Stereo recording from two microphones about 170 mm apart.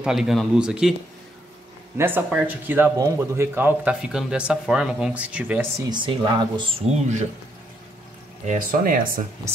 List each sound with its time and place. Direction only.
0.0 s speech: 5° right (ahead or behind)
2.0 s speech: 10° right (ahead or behind)
5.8 s speech: 25° right (ahead or behind)
8.5 s speech: 55° right (ahead or behind)